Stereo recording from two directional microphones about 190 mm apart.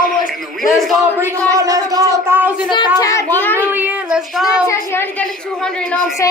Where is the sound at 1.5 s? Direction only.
15° right (ahead or behind).